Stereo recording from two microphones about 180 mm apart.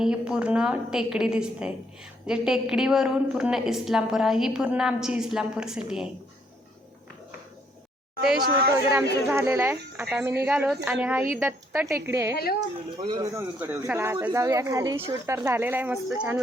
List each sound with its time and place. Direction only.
0.0 s a woman's voice: 5° right (ahead or behind)
8.4 s speech: 55° right (ahead or behind)
9.3 s speech: 15° right (ahead or behind)